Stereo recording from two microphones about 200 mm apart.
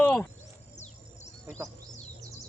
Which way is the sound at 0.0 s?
5° left (ahead or behind).